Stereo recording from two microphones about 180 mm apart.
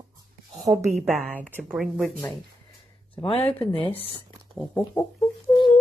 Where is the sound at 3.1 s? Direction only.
30° left (ahead or behind).